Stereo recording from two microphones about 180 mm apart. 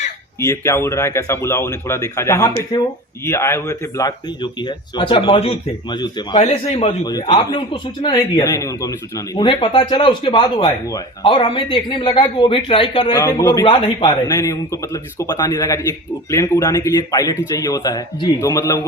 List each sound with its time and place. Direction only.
0.3 s speech: 15° left (ahead or behind)
6.4 s a man's voice: 35° left (ahead or behind)
7.0 s speech: 20° left (ahead or behind)